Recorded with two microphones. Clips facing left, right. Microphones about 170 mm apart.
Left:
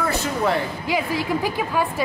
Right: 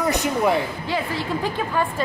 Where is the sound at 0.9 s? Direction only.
10° left (ahead or behind).